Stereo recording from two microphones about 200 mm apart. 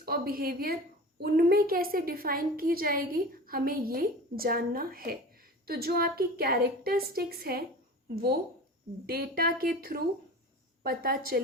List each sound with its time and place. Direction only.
0.0 s a woman's voice: 50° right (ahead or behind)